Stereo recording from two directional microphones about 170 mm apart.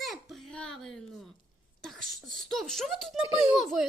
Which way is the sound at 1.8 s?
Centre (ahead or behind).